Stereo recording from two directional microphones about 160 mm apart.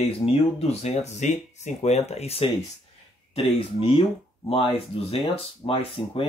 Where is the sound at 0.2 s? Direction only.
40° left (ahead or behind).